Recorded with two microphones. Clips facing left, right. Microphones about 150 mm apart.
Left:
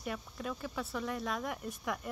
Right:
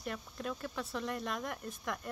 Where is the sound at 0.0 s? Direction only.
5° left (ahead or behind).